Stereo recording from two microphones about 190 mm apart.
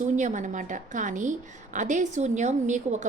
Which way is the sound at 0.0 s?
40° right (ahead or behind).